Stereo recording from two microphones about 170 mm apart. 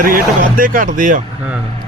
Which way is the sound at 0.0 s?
55° right (ahead or behind).